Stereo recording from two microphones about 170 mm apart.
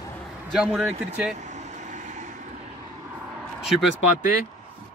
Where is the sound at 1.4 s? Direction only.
45° right (ahead or behind).